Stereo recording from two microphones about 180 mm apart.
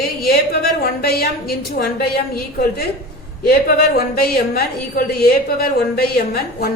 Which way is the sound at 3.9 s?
55° left (ahead or behind).